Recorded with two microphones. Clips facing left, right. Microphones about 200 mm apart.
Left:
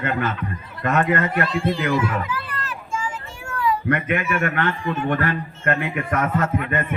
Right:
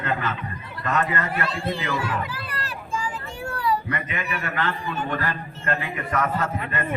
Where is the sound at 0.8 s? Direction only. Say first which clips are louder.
Left 5 dB; 60° left (ahead or behind).